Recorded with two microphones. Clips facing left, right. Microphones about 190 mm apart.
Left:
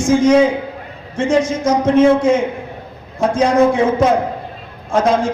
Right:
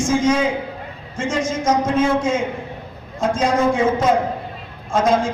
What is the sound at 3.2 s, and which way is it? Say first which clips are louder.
Speech: left 5 dB; 65° left (ahead or behind).